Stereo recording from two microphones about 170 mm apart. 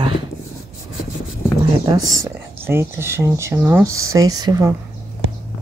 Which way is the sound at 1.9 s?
20° right (ahead or behind).